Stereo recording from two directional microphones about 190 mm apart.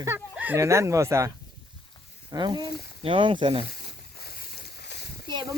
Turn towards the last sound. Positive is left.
turn(degrees=-25)  # may be behind; listen again after turning